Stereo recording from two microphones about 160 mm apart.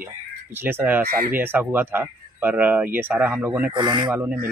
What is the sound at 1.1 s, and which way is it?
Speech, 65° right (ahead or behind).